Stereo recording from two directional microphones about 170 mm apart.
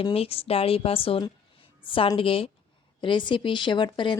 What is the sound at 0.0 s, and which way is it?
A woman's voice, 35° left (ahead or behind).